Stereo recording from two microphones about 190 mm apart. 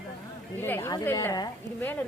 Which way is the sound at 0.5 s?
10° left (ahead or behind).